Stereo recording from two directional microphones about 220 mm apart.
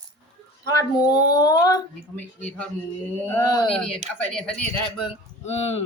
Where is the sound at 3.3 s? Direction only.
15° left (ahead or behind).